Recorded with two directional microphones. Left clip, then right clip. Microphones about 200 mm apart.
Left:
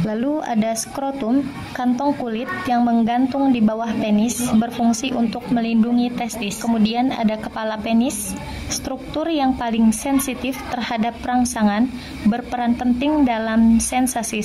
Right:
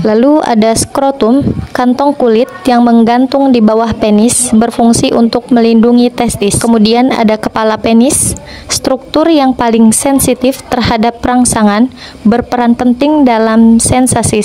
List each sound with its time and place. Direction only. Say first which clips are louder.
0.0 s speech: right 15 dB; 45° right (ahead or behind)